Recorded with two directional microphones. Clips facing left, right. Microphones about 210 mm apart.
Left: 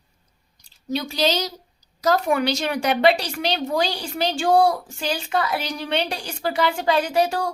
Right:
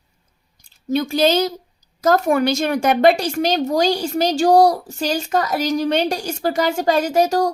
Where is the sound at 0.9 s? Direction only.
50° right (ahead or behind).